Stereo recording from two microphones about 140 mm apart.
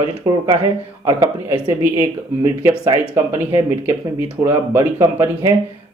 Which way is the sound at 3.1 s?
15° right (ahead or behind).